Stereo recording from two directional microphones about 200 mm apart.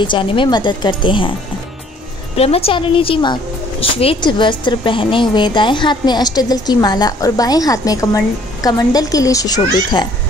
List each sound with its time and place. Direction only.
0.0 s a woman's voice: 25° left (ahead or behind)
2.3 s a woman's voice: 30° left (ahead or behind)